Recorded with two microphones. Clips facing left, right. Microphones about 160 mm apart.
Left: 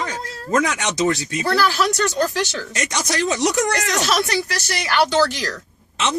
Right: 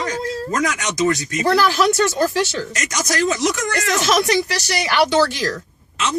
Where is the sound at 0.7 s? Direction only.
30° left (ahead or behind).